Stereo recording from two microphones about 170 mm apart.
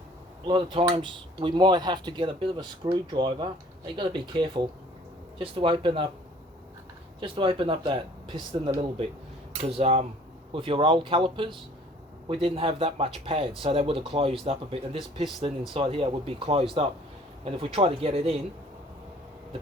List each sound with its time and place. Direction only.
0.4 s speech: 30° right (ahead or behind)
7.2 s speech: 30° right (ahead or behind)